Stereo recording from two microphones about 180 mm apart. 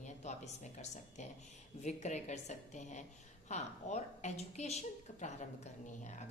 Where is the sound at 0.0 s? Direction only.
40° left (ahead or behind).